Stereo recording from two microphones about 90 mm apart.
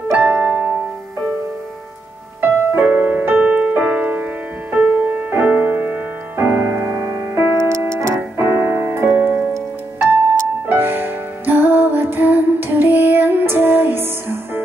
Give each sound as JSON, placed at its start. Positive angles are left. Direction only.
{"t": 0.2, "sound": "piano", "side_deg": -20}
{"t": 2.4, "sound": "music", "side_deg": -20}
{"t": 10.7, "sound": "music", "side_deg": -25}